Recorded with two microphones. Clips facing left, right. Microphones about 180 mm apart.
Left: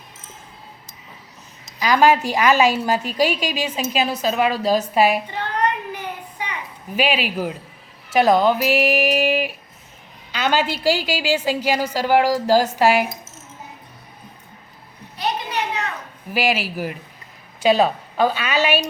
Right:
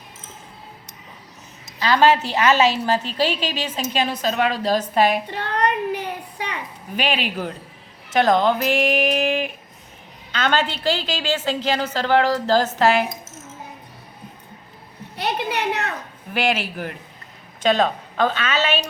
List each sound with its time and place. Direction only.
1.8 s a woman's voice: 10° left (ahead or behind)
5.3 s speech: 65° right (ahead or behind)
6.9 s a woman's voice: 5° left (ahead or behind)
15.1 s a woman's voice: 65° right (ahead or behind)
16.3 s a woman's voice: 5° left (ahead or behind)